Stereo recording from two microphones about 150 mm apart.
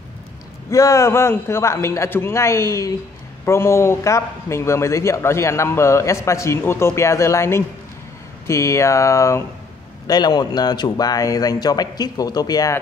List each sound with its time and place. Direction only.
0.7 s a man's voice: 20° left (ahead or behind)